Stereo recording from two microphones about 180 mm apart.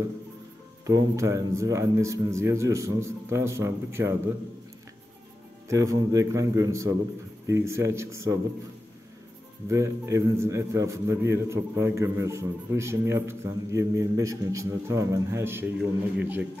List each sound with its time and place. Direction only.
0.8 s a man's voice: 20° right (ahead or behind)
5.7 s a man's voice: 20° right (ahead or behind)
9.7 s a man's voice: 15° right (ahead or behind)